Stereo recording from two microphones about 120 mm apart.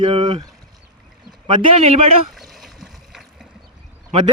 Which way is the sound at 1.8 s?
60° right (ahead or behind).